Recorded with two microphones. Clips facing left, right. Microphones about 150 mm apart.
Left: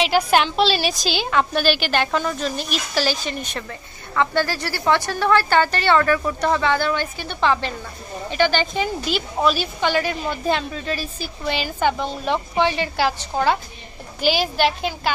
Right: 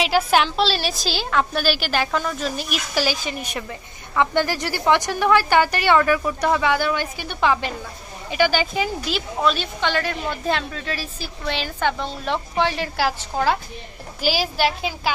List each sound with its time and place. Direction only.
0.0 s a woman's voice: centre (ahead or behind)